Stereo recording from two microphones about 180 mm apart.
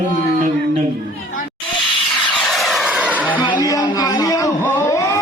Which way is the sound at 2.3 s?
Centre (ahead or behind).